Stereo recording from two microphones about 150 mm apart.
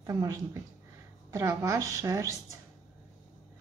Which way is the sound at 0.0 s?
25° right (ahead or behind).